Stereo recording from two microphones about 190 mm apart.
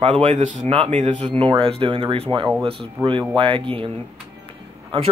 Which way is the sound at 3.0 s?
15° right (ahead or behind).